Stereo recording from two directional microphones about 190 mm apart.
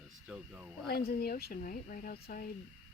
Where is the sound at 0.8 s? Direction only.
55° left (ahead or behind).